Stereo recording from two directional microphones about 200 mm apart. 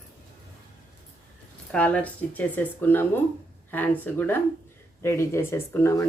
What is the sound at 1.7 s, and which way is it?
Speech, 5° left (ahead or behind).